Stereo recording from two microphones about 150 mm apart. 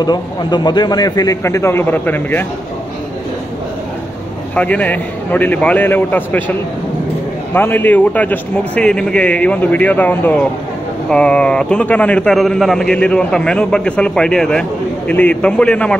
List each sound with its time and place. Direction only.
0.0 s a man's voice: 30° left (ahead or behind); by 2.4 s 15° left (ahead or behind)
4.6 s speech: 10° left (ahead or behind)
7.5 s speech: 15° left (ahead or behind)